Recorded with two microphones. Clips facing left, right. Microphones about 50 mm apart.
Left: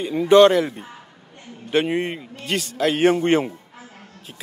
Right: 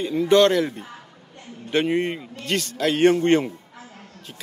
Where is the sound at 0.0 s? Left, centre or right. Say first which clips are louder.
Left 4 dB; centre.